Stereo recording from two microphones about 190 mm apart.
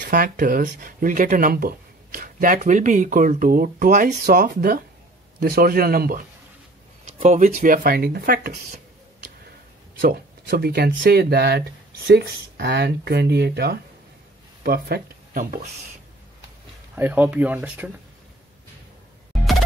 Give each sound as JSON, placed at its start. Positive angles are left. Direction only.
{"t": 0.1, "sound": "speech", "side_deg": -45}
{"t": 9.9, "sound": "speech", "side_deg": -50}
{"t": 16.9, "sound": "speech", "side_deg": -10}